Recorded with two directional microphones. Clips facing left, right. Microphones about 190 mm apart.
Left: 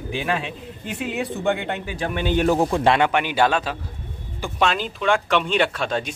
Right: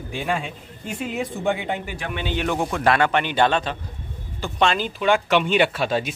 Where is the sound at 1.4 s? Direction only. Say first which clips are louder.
Even; 5° right (ahead or behind).